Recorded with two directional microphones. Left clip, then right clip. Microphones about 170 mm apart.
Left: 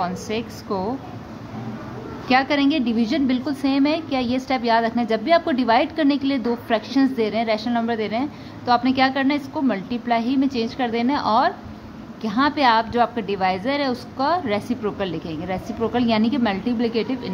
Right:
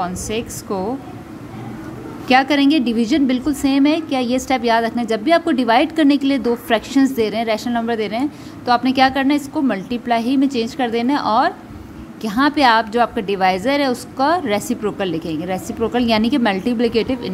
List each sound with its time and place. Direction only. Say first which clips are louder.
0.0 s a woman's voice: right 2 dB; 25° right (ahead or behind)
2.2 s a woman's voice: right 4 dB; 30° right (ahead or behind)